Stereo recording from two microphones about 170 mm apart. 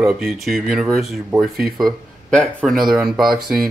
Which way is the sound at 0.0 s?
Centre (ahead or behind).